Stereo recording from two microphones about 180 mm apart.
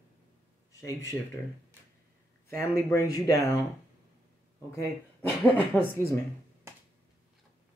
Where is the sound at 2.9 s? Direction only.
15° left (ahead or behind).